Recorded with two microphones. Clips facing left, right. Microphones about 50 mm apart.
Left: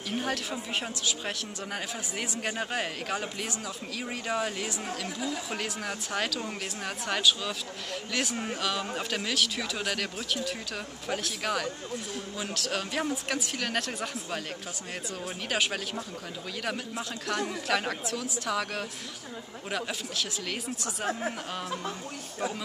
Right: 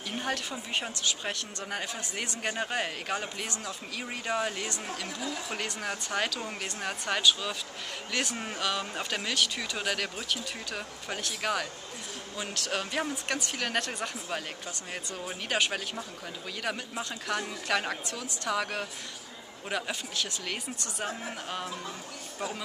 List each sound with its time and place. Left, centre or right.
0.1 s a woman's voice: centre